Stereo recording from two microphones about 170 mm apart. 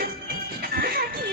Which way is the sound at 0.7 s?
65° right (ahead or behind).